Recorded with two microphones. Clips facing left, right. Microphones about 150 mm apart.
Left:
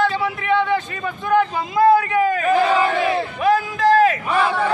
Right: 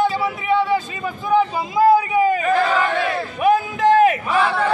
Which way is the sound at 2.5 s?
15° left (ahead or behind).